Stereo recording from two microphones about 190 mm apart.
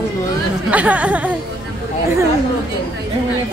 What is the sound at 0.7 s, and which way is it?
Speech, 5° right (ahead or behind).